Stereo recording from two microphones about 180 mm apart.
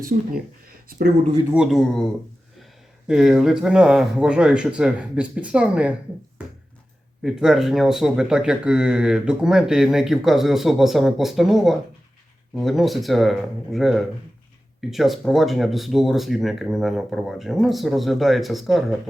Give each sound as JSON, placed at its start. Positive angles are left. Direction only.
{"t": 0.9, "sound": "speech", "side_deg": -50}
{"t": 1.5, "sound": "speech", "side_deg": 0}
{"t": 3.1, "sound": "speech", "side_deg": -5}
{"t": 7.2, "sound": "speech", "side_deg": -5}